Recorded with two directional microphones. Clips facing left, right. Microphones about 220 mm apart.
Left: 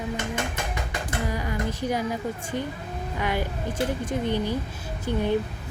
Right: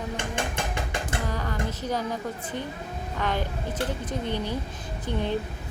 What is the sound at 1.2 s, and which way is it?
Speech, 10° left (ahead or behind).